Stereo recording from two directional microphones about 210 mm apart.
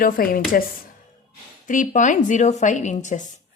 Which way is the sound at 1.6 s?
40° left (ahead or behind).